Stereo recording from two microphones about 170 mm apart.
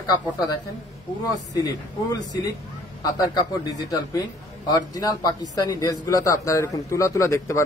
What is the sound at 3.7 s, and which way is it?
A man's voice, 20° left (ahead or behind).